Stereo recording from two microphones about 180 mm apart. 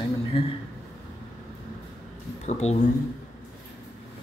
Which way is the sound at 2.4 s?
40° left (ahead or behind).